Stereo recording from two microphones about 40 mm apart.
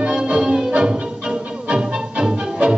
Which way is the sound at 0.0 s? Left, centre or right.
Right.